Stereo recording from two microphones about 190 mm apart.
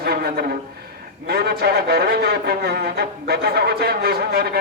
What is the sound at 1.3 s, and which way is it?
Speech, 55° right (ahead or behind).